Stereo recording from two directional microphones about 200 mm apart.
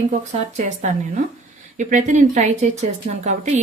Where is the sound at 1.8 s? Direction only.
40° right (ahead or behind).